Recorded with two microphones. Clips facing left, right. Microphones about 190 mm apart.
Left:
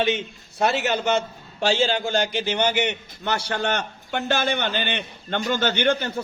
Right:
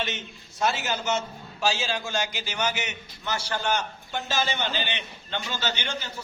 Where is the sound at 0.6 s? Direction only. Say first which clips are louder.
Left 5 dB; 65° left (ahead or behind).